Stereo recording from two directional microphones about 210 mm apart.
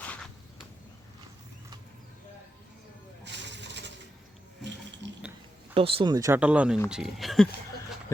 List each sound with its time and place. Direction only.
0.0 s a sound: 5° left (ahead or behind)
3.2 s coin: 55° right (ahead or behind)
5.7 s speech: 25° right (ahead or behind); by 7.4 s centre (ahead or behind)